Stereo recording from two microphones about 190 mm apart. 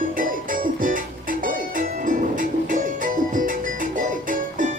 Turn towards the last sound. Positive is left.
turn(degrees=-45)  # may be behind; listen again after turning